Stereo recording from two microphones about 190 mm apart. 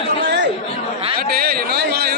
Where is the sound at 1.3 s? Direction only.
55° right (ahead or behind).